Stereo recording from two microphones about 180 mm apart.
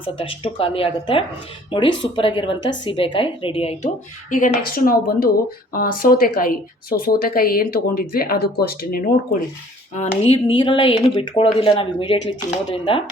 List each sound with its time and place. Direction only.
0.0 s speech: 30° left (ahead or behind); by 9.4 s 55° left (ahead or behind)
9.9 s speech: 35° left (ahead or behind)